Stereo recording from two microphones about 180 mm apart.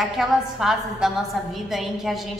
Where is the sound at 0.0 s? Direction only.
Centre (ahead or behind).